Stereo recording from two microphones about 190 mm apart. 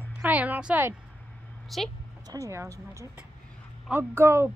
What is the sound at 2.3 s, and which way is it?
Speech, 15° right (ahead or behind).